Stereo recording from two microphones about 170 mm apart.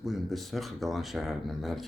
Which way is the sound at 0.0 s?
Centre (ahead or behind).